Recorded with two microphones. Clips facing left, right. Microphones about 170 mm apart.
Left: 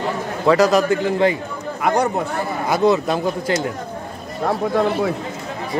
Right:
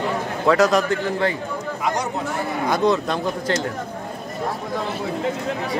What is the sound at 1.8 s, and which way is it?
Speech, 60° left (ahead or behind).